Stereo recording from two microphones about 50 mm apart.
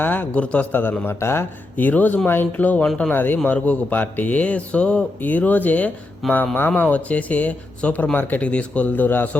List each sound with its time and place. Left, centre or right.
0.0 s a man's voice: left
0.3 s speech: left
0.7 s a man's voice: left
1.2 s speech: left
1.7 s a man's voice: left
2.6 s a man's voice: left
3.3 s speech: left
5.2 s a man's voice: left